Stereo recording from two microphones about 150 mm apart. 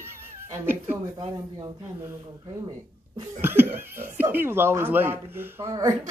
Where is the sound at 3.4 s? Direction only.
15° right (ahead or behind).